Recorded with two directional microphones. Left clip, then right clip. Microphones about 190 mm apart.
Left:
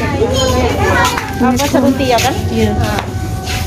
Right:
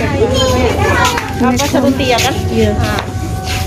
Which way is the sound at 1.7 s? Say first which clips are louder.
Left 1 dB; 40° left (ahead or behind).